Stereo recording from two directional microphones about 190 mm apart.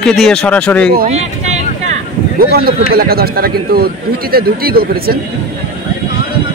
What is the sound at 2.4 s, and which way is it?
Speech, 55° right (ahead or behind).